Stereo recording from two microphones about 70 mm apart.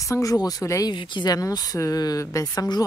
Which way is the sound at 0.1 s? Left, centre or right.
Left.